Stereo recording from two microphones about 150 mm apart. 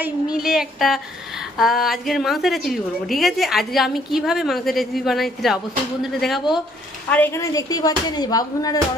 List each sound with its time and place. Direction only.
0.0 s speech: 5° right (ahead or behind)
7.1 s speech: 15° left (ahead or behind)